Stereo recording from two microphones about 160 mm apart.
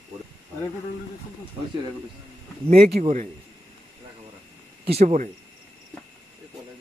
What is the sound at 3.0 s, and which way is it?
Speech, 45° right (ahead or behind).